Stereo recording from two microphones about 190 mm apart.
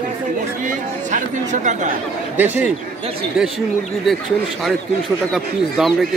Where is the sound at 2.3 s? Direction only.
10° right (ahead or behind).